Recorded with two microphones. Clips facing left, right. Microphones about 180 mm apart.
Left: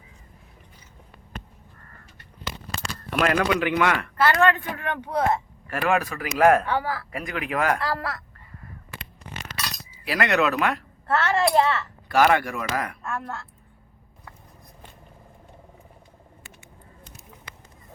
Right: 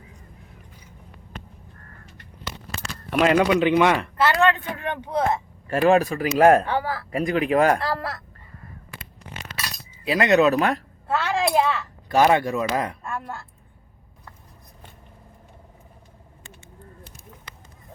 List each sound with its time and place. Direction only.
3.2 s speech: 20° right (ahead or behind)
10.1 s speech: 20° right (ahead or behind)
10.4 s speech: 35° right (ahead or behind)
11.1 s a child's voice: 15° right (ahead or behind)
13.0 s speech: 15° right (ahead or behind)